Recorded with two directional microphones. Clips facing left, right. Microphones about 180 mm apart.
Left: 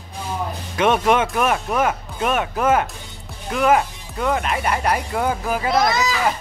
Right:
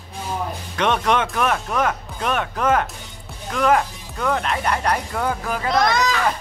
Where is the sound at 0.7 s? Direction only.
10° left (ahead or behind).